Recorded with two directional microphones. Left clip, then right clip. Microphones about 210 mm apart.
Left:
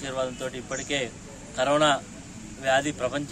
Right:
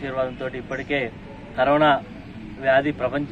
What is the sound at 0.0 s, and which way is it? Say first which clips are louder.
Speech: right 4 dB; 20° left (ahead or behind).